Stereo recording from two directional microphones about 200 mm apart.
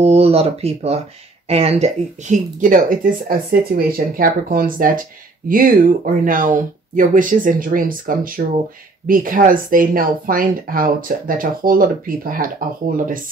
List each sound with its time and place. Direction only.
0.0 s speech: 30° right (ahead or behind)